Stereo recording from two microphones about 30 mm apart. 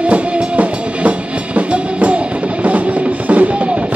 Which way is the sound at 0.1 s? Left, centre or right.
Right.